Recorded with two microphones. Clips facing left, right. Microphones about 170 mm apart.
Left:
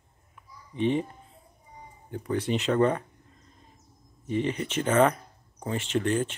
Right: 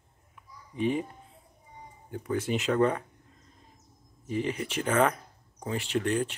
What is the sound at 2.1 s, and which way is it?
Speech, 5° right (ahead or behind).